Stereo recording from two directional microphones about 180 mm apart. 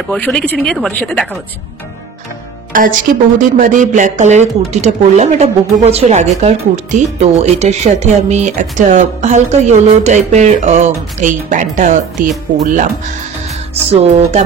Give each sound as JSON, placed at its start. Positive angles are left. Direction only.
{"t": 0.1, "sound": "speech", "side_deg": 5}
{"t": 2.7, "sound": "speech", "side_deg": -50}
{"t": 13.9, "sound": "speech", "side_deg": -35}